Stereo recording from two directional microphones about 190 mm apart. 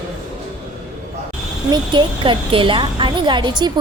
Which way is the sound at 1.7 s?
25° right (ahead or behind).